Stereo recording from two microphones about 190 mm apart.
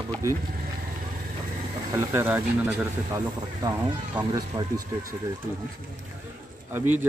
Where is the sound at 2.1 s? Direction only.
10° right (ahead or behind).